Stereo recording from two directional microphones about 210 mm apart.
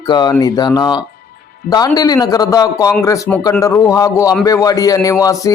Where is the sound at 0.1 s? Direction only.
20° left (ahead or behind).